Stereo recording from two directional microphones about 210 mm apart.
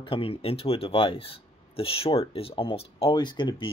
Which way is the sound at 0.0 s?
25° left (ahead or behind).